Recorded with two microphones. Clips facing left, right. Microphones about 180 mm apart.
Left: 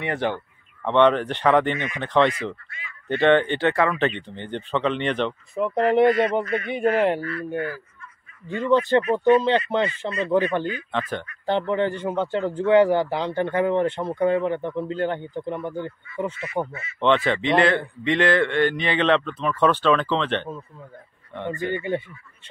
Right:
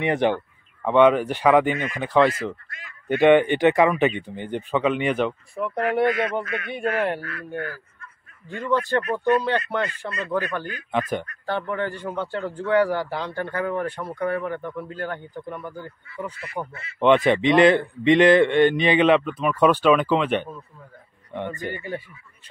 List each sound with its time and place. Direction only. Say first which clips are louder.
0.0 s speech: right 4 dB; 20° right (ahead or behind)
5.5 s a man's voice: left 4 dB; 20° left (ahead or behind)
8.5 s a man's voice: left 4 dB; 20° left (ahead or behind)
10.9 s speech: right 3 dB; 10° right (ahead or behind)
11.4 s a man's voice: left 7 dB; 20° left (ahead or behind)
17.0 s speech: right 3 dB; 15° right (ahead or behind)
21.6 s a man's voice: left 5 dB; 25° left (ahead or behind)